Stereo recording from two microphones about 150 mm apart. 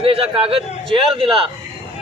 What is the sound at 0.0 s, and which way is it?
A man's voice, 40° right (ahead or behind).